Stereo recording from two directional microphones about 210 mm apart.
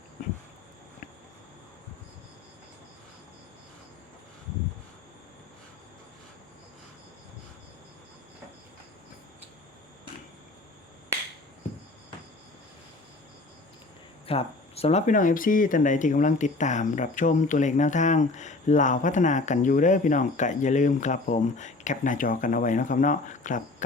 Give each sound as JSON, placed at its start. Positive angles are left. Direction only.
{"t": 14.3, "sound": "speech", "side_deg": 30}